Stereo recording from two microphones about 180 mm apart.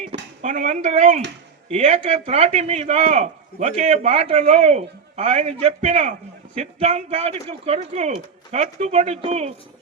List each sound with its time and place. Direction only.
0.0 s speech: 45° right (ahead or behind)